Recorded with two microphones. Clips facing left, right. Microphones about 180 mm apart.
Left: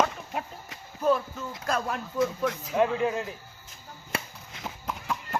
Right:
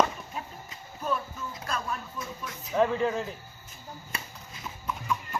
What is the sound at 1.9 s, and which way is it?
Speech, 75° left (ahead or behind).